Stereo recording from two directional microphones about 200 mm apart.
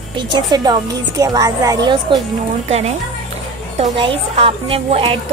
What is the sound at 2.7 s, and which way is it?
A woman's voice, 35° right (ahead or behind).